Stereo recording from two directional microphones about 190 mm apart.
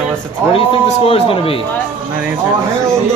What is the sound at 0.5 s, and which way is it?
Speech, 30° left (ahead or behind).